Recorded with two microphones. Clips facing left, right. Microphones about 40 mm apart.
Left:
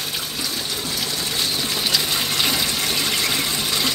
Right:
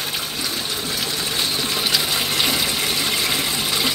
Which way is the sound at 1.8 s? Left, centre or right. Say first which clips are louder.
Even; centre.